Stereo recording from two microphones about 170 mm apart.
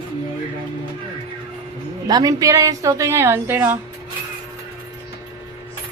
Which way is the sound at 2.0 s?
20° right (ahead or behind).